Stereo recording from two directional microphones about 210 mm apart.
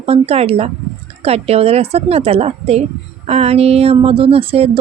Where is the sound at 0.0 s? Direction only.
30° right (ahead or behind).